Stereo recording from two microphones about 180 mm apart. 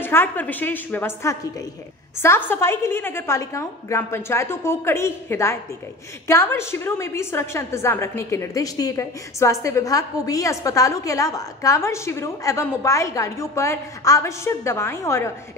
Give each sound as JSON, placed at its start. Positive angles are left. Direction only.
{"t": 0.0, "sound": "a woman's voice", "side_deg": 10}